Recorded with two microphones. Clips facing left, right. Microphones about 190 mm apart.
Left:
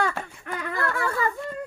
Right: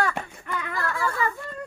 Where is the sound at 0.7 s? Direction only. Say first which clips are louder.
Left 1 dB; 60° left (ahead or behind).